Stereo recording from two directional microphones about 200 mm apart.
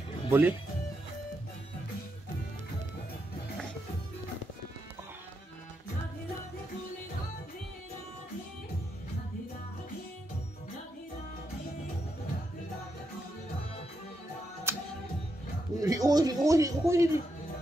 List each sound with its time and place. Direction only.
0.3 s speech: 10° right (ahead or behind)
14.7 s music: 10° right (ahead or behind)
15.8 s a sound: 20° right (ahead or behind)